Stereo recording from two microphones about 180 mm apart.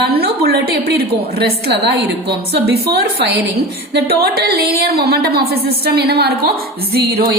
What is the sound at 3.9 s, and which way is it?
A woman's voice, 60° right (ahead or behind).